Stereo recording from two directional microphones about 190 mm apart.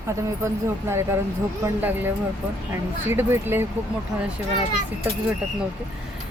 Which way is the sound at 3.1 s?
10° right (ahead or behind).